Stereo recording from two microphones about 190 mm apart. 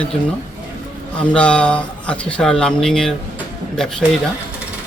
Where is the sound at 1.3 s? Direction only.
5° left (ahead or behind).